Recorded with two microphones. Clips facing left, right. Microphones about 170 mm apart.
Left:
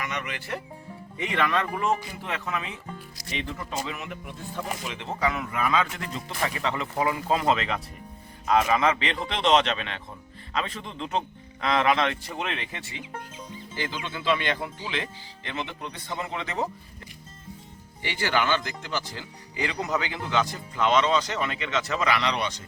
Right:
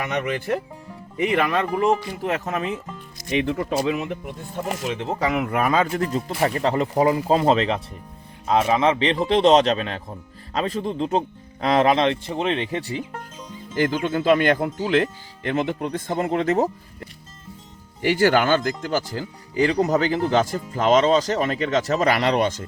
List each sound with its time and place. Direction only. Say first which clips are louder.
0.0 s a man's voice: right 9 dB; 50° right (ahead or behind)
3.2 s speech: right 12 dB; 60° right (ahead or behind)
4.8 s speech: right 9 dB; 50° right (ahead or behind)
5.2 s a man's voice: right 5 dB; 70° right (ahead or behind); by 13.1 s 35° right (ahead or behind)
13.7 s speech: right 12 dB; 50° right (ahead or behind)
18.0 s speech: right 9 dB; 45° right (ahead or behind)